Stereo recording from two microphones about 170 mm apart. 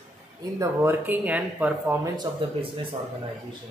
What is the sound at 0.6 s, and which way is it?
Speech, 15° right (ahead or behind).